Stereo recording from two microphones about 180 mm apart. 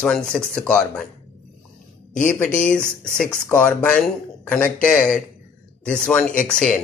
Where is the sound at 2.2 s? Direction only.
45° left (ahead or behind).